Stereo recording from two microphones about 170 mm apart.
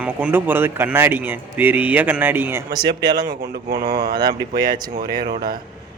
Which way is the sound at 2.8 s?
25° right (ahead or behind).